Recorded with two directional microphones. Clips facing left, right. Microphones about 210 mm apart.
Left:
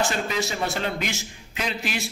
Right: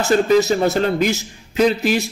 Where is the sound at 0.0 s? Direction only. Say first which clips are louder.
Right 11 dB; 40° right (ahead or behind).